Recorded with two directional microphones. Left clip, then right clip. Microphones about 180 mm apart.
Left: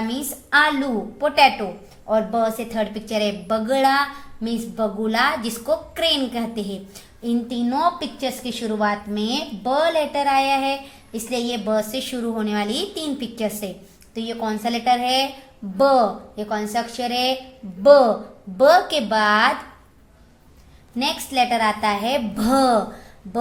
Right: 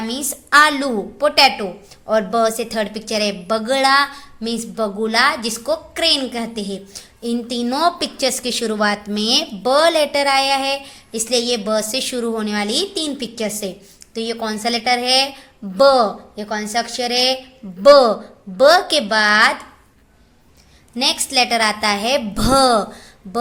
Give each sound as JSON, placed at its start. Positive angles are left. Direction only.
{"t": 0.1, "sound": "a woman's voice", "side_deg": -35}
{"t": 20.9, "sound": "a woman's voice", "side_deg": -30}